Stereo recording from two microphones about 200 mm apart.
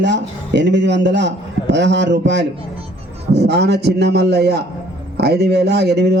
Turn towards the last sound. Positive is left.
turn(degrees=-55)  # may be behind; listen again after turning